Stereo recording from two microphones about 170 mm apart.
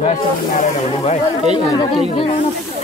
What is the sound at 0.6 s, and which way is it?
Speech, 45° left (ahead or behind).